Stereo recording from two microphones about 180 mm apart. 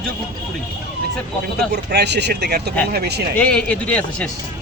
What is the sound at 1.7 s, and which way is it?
Speech, 70° right (ahead or behind).